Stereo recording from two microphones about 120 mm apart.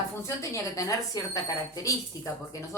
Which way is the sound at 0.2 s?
25° left (ahead or behind).